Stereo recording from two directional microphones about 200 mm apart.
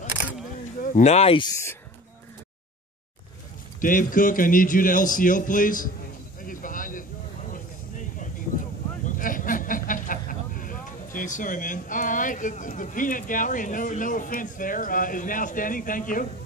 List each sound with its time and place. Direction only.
0.8 s a man's voice: 35° left (ahead or behind)
3.8 s a man's voice: 40° left (ahead or behind)
6.4 s a sound: 45° left (ahead or behind)
9.0 s speech: 40° left (ahead or behind)